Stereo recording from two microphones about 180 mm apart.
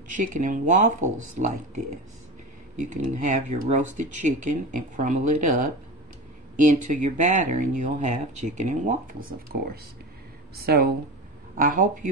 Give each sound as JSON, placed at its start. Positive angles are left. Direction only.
{"t": 0.1, "sound": "speech", "side_deg": -45}
{"t": 2.9, "sound": "speech", "side_deg": -45}
{"t": 10.6, "sound": "speech", "side_deg": -60}